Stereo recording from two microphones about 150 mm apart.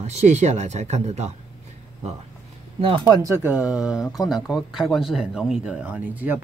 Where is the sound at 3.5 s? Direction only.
5° right (ahead or behind).